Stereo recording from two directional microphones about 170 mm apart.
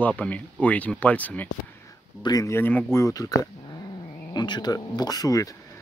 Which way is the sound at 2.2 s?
20° left (ahead or behind).